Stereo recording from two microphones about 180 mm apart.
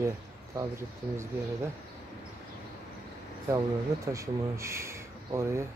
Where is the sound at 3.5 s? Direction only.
15° right (ahead or behind).